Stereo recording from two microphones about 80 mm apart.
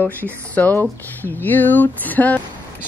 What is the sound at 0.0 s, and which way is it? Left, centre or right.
Speech, left.